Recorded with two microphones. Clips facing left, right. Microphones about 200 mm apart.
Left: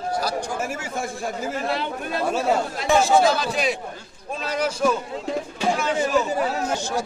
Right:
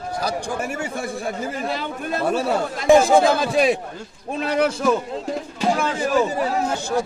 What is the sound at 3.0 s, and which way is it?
A man's voice, 55° right (ahead or behind).